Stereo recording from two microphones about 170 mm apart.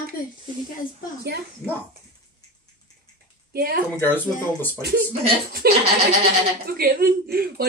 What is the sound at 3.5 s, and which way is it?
Speech, 60° right (ahead or behind).